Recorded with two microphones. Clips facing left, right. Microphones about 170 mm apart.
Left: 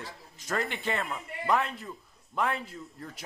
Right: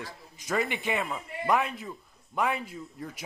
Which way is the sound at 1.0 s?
5° right (ahead or behind).